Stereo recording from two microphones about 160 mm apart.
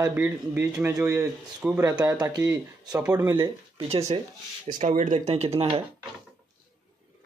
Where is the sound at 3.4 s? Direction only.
35° right (ahead or behind).